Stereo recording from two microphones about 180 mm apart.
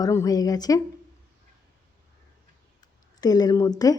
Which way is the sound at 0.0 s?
20° left (ahead or behind).